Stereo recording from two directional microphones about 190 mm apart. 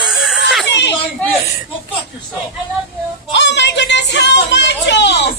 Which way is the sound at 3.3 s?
65° left (ahead or behind).